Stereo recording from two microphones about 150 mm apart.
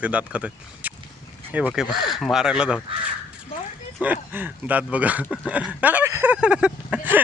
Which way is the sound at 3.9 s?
10° right (ahead or behind).